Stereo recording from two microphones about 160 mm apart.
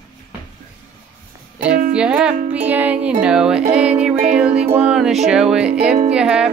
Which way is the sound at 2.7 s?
10° right (ahead or behind).